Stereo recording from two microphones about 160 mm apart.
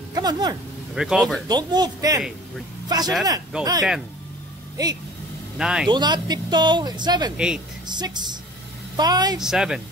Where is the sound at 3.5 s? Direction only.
5° right (ahead or behind).